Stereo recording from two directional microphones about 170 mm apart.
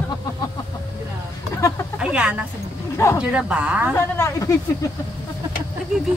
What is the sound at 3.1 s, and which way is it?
Speech, 10° right (ahead or behind).